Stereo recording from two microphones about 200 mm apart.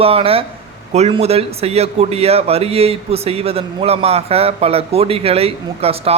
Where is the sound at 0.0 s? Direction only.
30° right (ahead or behind).